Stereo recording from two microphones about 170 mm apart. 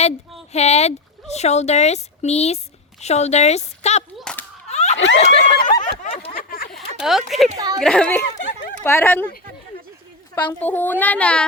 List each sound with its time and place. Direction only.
0.5 s speech: 40° left (ahead or behind)
4.2 s whip: 5° left (ahead or behind)
4.7 s a sound: 40° left (ahead or behind)
4.9 s speech: 90° left
5.2 s speech: 35° left (ahead or behind)
5.9 s a sound: 35° left (ahead or behind)
6.3 s a sound: 55° left (ahead or behind)
6.7 s speech: centre (ahead or behind)
7.5 s a woman's voice: 20° right (ahead or behind)
7.8 s a child's voice: 5° left (ahead or behind)
10.3 s a child's voice: 10° left (ahead or behind)